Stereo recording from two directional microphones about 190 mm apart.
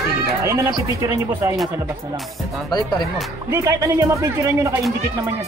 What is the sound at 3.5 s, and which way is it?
Speech, 15° right (ahead or behind).